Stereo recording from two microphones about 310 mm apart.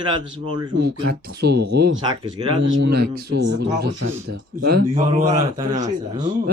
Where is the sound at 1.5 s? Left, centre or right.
Right.